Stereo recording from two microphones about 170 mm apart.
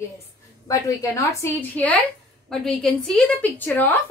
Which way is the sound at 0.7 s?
20° left (ahead or behind).